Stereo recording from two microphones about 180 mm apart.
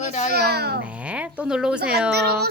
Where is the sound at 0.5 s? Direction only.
60° right (ahead or behind).